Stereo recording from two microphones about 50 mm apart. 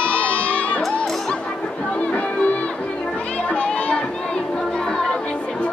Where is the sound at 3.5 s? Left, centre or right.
Centre.